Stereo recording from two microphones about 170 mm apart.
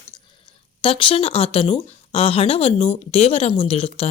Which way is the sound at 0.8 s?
30° left (ahead or behind).